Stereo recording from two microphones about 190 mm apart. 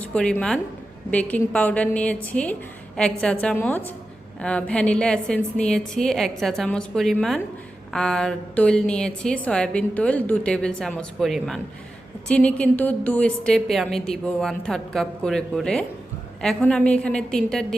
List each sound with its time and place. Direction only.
0.0 s a woman's voice: 5° left (ahead or behind)